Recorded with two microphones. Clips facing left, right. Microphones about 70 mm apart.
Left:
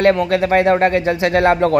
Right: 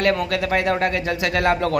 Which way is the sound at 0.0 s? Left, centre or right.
Left.